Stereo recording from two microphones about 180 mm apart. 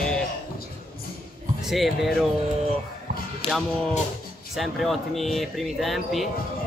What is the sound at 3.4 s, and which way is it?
Speech, 30° left (ahead or behind).